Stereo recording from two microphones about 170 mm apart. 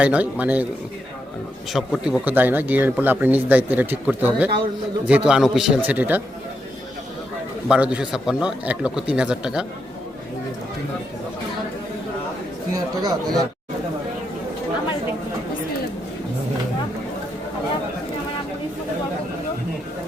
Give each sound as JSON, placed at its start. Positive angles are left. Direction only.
{"t": 0.0, "sound": "a man's voice", "side_deg": -10}
{"t": 1.7, "sound": "a man's voice", "side_deg": 0}
{"t": 7.7, "sound": "a man's voice", "side_deg": -5}
{"t": 12.7, "sound": "speech", "side_deg": -20}